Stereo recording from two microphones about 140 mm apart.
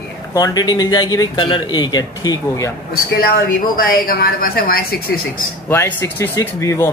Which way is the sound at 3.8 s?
90° left.